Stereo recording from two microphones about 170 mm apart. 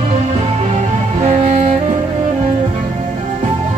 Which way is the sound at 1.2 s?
40° right (ahead or behind).